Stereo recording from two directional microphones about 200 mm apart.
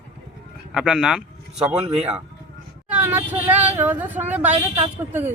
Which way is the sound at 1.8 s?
30° right (ahead or behind).